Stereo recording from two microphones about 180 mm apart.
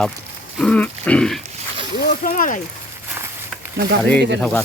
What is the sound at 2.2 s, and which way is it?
Speech, 50° left (ahead or behind).